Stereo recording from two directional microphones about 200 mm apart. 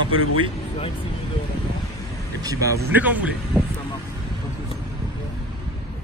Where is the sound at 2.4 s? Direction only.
15° right (ahead or behind).